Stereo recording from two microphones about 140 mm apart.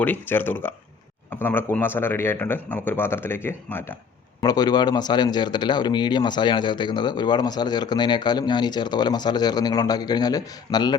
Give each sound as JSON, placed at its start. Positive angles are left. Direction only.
{"t": 0.0, "sound": "speech", "side_deg": 15}
{"t": 4.4, "sound": "a man's voice", "side_deg": 30}